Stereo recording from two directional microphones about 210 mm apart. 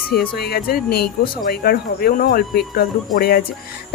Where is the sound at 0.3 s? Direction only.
50° left (ahead or behind).